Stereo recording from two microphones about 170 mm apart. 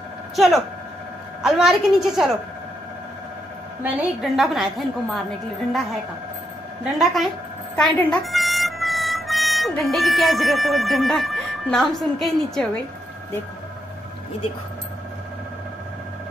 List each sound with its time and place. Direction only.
1.4 s a woman's voice: centre (ahead or behind)
3.8 s a woman's voice: 10° right (ahead or behind)
6.8 s a woman's voice: centre (ahead or behind)